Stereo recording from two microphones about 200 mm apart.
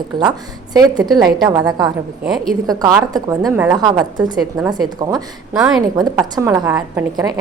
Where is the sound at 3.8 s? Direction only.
20° right (ahead or behind).